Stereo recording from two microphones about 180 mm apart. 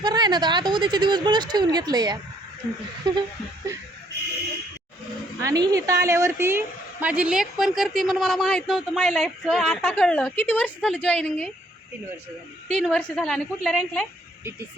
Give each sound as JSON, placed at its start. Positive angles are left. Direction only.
{"t": 0.0, "sound": "speech", "side_deg": -25}
{"t": 3.7, "sound": "music", "side_deg": -15}
{"t": 5.4, "sound": "a woman's voice", "side_deg": -20}
{"t": 12.6, "sound": "a woman's voice", "side_deg": 5}